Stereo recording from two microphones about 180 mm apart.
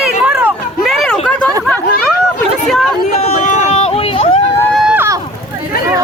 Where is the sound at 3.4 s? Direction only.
40° left (ahead or behind).